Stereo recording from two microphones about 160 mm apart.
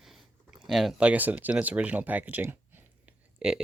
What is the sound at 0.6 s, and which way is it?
Speech, centre (ahead or behind).